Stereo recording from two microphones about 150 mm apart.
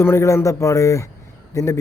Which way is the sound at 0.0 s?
15° left (ahead or behind).